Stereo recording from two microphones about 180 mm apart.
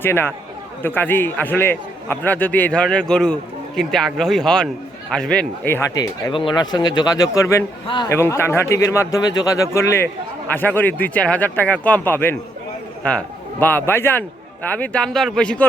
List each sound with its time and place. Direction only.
0.0 s a man's voice: 10° left (ahead or behind)
8.1 s a man's voice: 15° left (ahead or behind)